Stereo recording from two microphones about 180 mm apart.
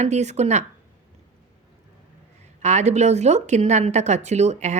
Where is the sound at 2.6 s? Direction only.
40° right (ahead or behind).